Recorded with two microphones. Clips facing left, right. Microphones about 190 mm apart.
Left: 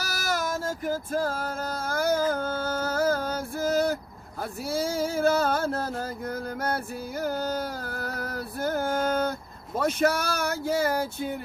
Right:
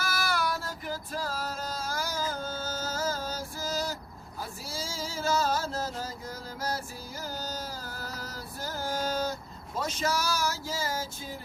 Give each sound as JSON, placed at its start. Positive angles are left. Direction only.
{"t": 0.0, "sound": "music", "side_deg": 40}
{"t": 4.7, "sound": "speech", "side_deg": 60}
{"t": 6.6, "sound": "music", "side_deg": 60}
{"t": 9.7, "sound": "speech", "side_deg": 60}